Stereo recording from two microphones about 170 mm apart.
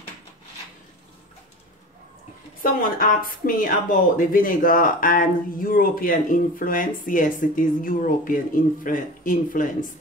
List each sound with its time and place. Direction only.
2.6 s speech: 55° left (ahead or behind)